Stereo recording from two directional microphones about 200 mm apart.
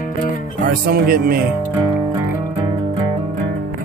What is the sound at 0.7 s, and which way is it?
Speech, 45° right (ahead or behind).